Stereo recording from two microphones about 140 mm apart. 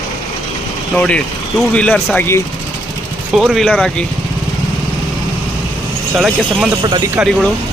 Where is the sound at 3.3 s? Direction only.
Centre (ahead or behind).